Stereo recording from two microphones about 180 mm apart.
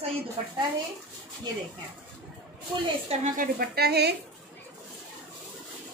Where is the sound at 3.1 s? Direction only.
40° right (ahead or behind).